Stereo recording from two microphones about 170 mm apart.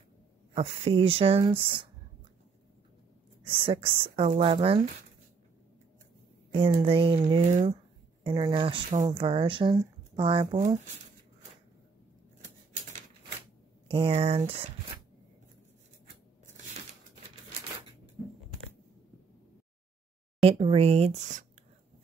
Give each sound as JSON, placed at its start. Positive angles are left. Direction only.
{"t": 0.6, "sound": "speech", "side_deg": -35}
{"t": 3.4, "sound": "speech", "side_deg": -30}
{"t": 6.7, "sound": "a woman's voice", "side_deg": -30}
{"t": 10.4, "sound": "speech", "side_deg": -40}
{"t": 13.8, "sound": "speech", "side_deg": -30}
{"t": 20.4, "sound": "speech", "side_deg": -35}